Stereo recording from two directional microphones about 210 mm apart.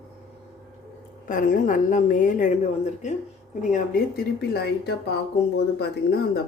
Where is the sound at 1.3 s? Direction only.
40° left (ahead or behind).